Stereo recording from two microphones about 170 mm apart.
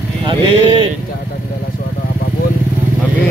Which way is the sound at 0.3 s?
25° right (ahead or behind).